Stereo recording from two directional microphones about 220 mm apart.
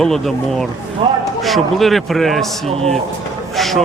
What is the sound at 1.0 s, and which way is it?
Speech, 20° right (ahead or behind).